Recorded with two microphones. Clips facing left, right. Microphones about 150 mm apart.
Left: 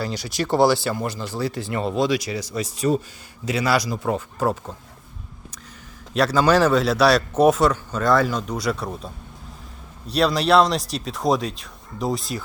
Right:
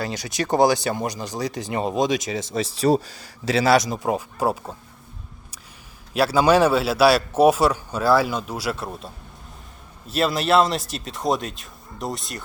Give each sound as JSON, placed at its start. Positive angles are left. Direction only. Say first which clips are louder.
{"t": 0.1, "sound": "speech", "louder": "even", "side_deg": -20}
{"t": 3.8, "sound": "a man's voice", "louder": "right 1 dB", "side_deg": -20}
{"t": 6.1, "sound": "a man's voice", "louder": "right 1 dB", "side_deg": -10}